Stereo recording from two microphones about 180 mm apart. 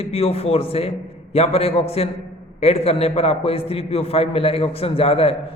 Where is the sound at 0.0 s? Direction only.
35° left (ahead or behind).